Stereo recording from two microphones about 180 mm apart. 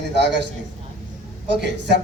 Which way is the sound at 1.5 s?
75° right (ahead or behind).